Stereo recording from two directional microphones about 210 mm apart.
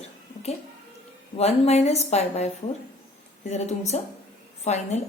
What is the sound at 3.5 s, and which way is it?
A woman's voice, 30° left (ahead or behind).